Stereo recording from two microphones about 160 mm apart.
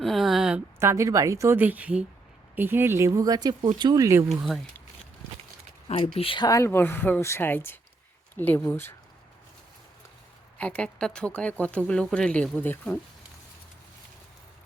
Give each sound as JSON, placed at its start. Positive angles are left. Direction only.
{"t": 0.0, "sound": "a sound", "side_deg": 0}
{"t": 0.8, "sound": "a woman's voice", "side_deg": -20}
{"t": 4.4, "sound": "speech", "side_deg": 0}
{"t": 6.1, "sound": "speech", "side_deg": 30}
{"t": 10.6, "sound": "speech", "side_deg": 5}